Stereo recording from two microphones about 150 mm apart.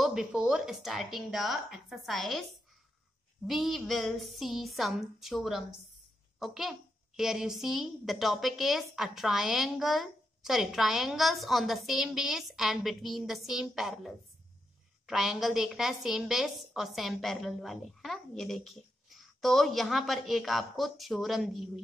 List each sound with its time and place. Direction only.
0.0 s a woman's voice: 5° right (ahead or behind)
3.4 s a woman's voice: centre (ahead or behind)